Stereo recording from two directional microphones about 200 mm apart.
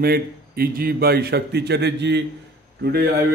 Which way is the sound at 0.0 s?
50° right (ahead or behind).